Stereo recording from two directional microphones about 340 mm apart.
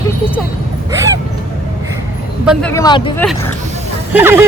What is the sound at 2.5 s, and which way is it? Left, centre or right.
Speech, centre.